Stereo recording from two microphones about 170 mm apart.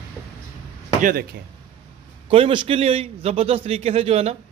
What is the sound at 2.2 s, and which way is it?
A man's voice, 30° right (ahead or behind).